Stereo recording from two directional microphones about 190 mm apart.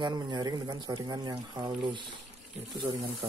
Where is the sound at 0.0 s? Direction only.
20° right (ahead or behind).